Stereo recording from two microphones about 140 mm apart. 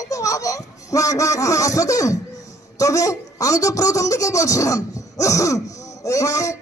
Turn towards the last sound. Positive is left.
turn(degrees=25)  # may be behind; listen again after turning